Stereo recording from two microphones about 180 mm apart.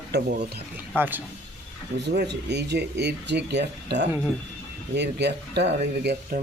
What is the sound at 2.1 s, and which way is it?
Speech, 70° right (ahead or behind).